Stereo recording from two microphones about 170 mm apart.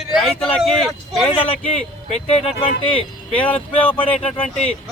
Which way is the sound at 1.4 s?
35° left (ahead or behind).